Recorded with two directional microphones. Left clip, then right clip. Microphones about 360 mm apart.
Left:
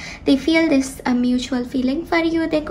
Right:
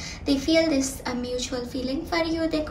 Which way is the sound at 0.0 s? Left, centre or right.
Centre.